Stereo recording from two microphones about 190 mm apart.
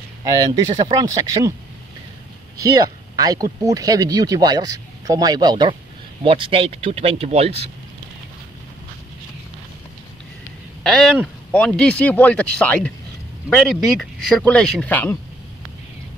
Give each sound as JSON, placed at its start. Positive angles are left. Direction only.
{"t": 0.2, "sound": "speech", "side_deg": -20}
{"t": 2.6, "sound": "speech", "side_deg": -20}
{"t": 10.8, "sound": "speech", "side_deg": 0}